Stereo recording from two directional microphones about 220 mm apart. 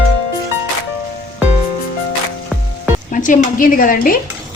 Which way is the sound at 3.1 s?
35° left (ahead or behind).